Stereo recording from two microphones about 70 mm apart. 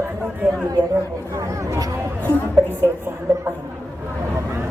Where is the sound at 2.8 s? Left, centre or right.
Right.